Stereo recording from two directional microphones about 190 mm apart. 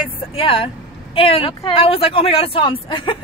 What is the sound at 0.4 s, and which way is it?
Speech, 30° left (ahead or behind).